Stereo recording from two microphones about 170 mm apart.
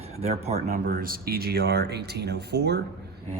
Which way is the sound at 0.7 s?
60° right (ahead or behind).